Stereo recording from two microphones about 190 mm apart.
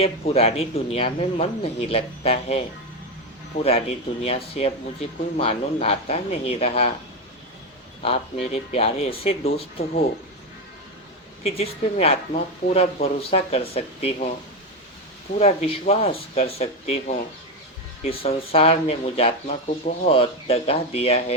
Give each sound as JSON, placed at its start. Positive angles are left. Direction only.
{"t": 0.0, "sound": "speech", "side_deg": 30}
{"t": 8.0, "sound": "speech", "side_deg": 30}
{"t": 11.4, "sound": "speech", "side_deg": 30}
{"t": 15.4, "sound": "speech", "side_deg": 30}